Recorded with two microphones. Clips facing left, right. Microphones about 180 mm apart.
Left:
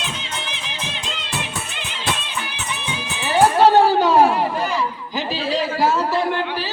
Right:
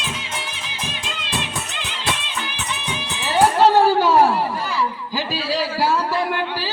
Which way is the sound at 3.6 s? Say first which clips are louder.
Even; 20° left (ahead or behind).